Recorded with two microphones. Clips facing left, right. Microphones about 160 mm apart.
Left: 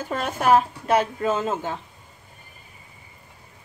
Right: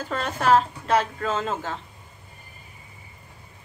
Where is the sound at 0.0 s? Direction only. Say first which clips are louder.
Left 1 dB; 10° left (ahead or behind).